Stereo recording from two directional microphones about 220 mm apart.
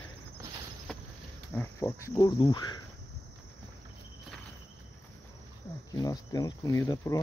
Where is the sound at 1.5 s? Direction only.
10° left (ahead or behind).